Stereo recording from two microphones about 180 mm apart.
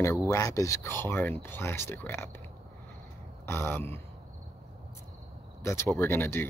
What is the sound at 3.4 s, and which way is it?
Speech, 10° left (ahead or behind).